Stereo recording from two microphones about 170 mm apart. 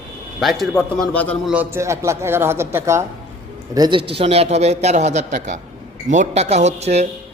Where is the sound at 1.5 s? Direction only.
10° right (ahead or behind).